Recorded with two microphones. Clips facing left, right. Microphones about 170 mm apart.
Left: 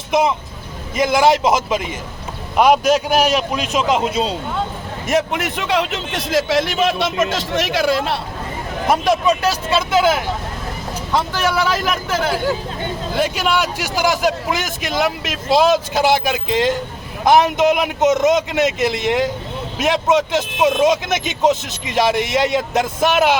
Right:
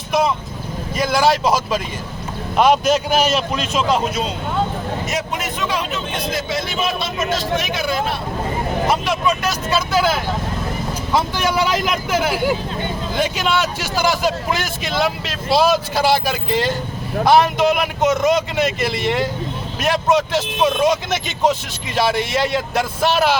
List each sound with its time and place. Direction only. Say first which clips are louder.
0.1 s a man's voice: left 1 dB; 20° left (ahead or behind)
5.0 s speech: left 5 dB; 55° left (ahead or behind); by 8.2 s 80° left
8.9 s a man's voice: left 6 dB; 40° left (ahead or behind); by 10.2 s 20° left (ahead or behind)
11.1 s speech: even; 15° right (ahead or behind)
13.1 s a man's voice: left 1 dB; 10° left (ahead or behind)
19.8 s a man's voice: left 1 dB; 20° left (ahead or behind)